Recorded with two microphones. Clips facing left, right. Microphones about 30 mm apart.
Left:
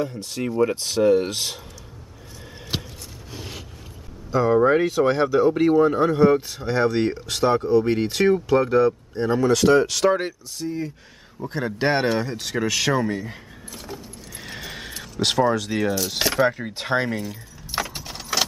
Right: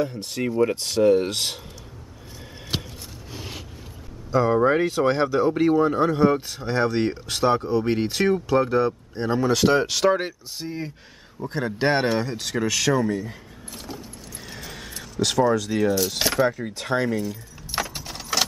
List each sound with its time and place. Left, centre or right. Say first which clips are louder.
0.3 s speech: left 1 dB; centre
2.7 s a sound: even; centre
3.3 s vehicle: even; centre
4.3 s speech: left 2 dB; centre
10.6 s speech: left 4 dB; right
11.3 s speech: even; centre
13.1 s speech: right 1 dB; centre
14.4 s a sound: left 4 dB; left
16.1 s speech: left 1 dB; centre
16.7 s speech: even; left
17.6 s keys jangling: even; centre